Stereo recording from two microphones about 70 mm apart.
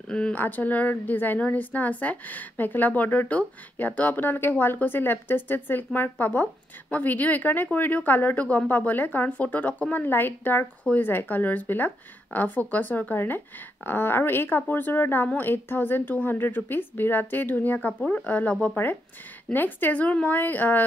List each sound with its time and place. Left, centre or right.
0.1 s a woman's voice: centre